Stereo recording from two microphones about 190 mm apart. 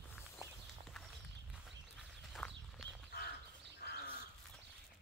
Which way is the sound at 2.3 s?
Centre (ahead or behind).